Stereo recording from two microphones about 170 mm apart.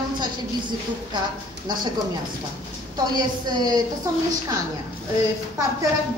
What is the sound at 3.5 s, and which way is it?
Speech, 25° right (ahead or behind).